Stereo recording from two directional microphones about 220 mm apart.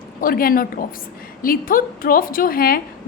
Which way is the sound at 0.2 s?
40° left (ahead or behind).